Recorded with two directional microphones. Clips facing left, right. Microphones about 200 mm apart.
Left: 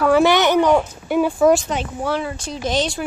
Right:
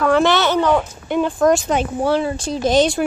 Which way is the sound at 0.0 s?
10° left (ahead or behind).